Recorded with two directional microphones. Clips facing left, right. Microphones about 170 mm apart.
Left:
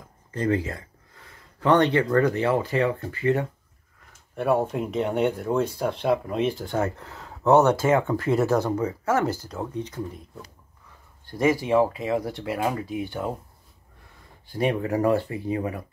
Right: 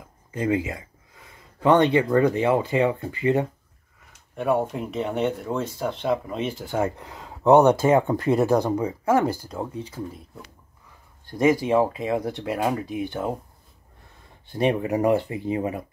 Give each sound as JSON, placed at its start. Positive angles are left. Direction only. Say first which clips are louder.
{"t": 0.3, "sound": "speech", "louder": "right 1 dB", "side_deg": -10}
{"t": 4.7, "sound": "speech", "louder": "left 2 dB", "side_deg": 5}
{"t": 11.2, "sound": "speech", "louder": "right 2 dB", "side_deg": -20}
{"t": 14.5, "sound": "speech", "louder": "right 2 dB", "side_deg": -25}